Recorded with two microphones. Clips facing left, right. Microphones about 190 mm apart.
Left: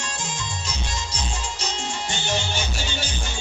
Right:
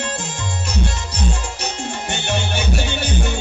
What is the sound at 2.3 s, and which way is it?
Music, 60° right (ahead or behind).